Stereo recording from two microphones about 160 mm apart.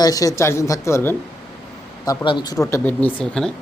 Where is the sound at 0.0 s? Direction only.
20° left (ahead or behind).